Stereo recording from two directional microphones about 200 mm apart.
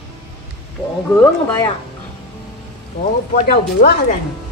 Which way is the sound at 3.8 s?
45° left (ahead or behind).